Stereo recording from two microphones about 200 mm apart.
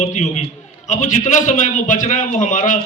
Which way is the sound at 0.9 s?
35° left (ahead or behind).